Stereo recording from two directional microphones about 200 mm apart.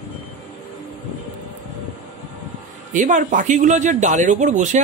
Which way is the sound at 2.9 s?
40° right (ahead or behind).